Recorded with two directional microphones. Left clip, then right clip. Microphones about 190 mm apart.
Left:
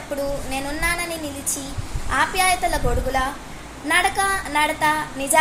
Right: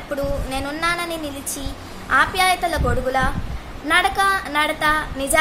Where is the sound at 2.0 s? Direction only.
15° right (ahead or behind).